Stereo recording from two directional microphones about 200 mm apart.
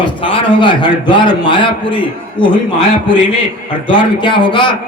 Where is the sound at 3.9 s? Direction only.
25° left (ahead or behind).